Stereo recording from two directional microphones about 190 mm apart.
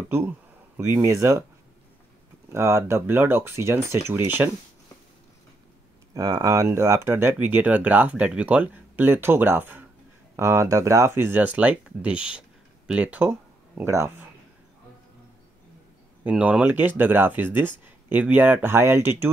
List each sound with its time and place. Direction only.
1.0 s speech: 15° right (ahead or behind)
2.5 s speech: 15° right (ahead or behind)
6.1 s speech: 20° right (ahead or behind)
16.3 s speech: 5° right (ahead or behind)